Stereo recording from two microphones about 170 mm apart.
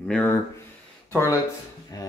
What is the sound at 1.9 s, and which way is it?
Speech, 20° left (ahead or behind).